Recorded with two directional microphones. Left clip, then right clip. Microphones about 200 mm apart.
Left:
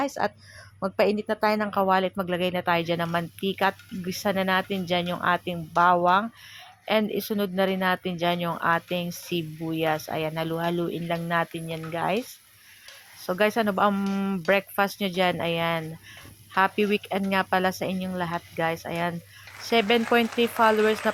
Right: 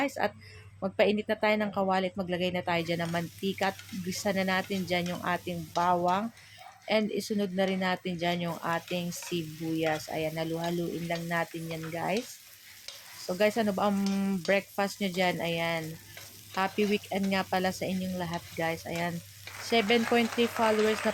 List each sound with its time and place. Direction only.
0.2 s a woman's voice: 15° left (ahead or behind)
13.4 s a woman's voice: 15° left (ahead or behind)
20.5 s speech: centre (ahead or behind)